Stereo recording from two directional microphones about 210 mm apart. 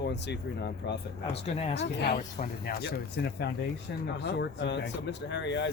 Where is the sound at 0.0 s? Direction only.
55° left (ahead or behind).